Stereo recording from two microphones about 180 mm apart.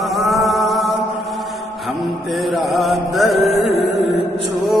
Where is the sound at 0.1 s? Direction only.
Centre (ahead or behind).